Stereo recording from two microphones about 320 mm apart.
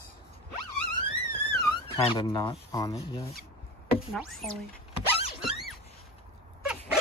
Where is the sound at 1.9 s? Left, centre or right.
Centre.